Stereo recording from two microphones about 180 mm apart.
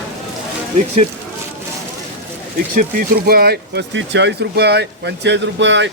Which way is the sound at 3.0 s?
55° right (ahead or behind).